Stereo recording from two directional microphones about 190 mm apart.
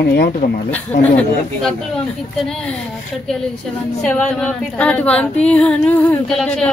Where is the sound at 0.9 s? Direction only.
10° left (ahead or behind).